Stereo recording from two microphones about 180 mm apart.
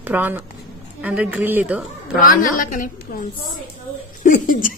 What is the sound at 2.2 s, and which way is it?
A woman's voice, 50° left (ahead or behind).